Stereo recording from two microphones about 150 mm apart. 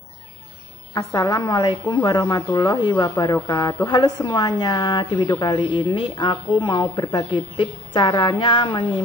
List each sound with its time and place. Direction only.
0.9 s speech: 25° left (ahead or behind)